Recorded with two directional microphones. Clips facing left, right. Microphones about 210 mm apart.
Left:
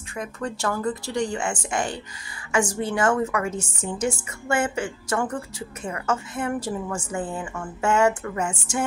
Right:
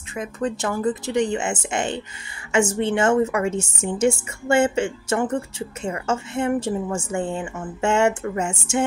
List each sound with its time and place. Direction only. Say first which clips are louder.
0.1 s a woman's voice: right 5 dB; 20° right (ahead or behind)